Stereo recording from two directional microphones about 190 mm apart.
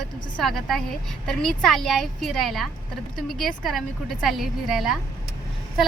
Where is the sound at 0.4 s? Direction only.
Centre (ahead or behind).